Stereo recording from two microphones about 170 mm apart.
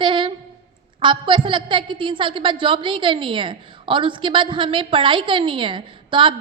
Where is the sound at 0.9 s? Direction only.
30° right (ahead or behind).